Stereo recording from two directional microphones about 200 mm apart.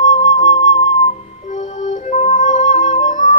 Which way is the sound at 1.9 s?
40° left (ahead or behind).